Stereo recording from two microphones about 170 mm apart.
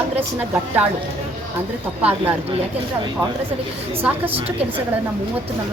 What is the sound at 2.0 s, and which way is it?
Speech, 10° right (ahead or behind).